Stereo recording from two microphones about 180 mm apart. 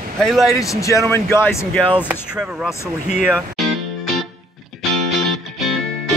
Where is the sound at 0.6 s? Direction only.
15° left (ahead or behind).